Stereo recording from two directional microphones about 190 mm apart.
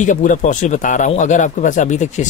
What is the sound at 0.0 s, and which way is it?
Speech, 40° left (ahead or behind).